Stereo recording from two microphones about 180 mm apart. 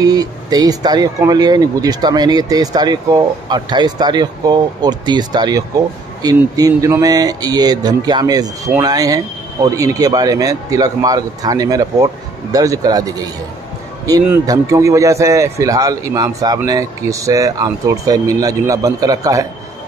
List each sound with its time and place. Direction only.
0.0 s speech: 20° right (ahead or behind)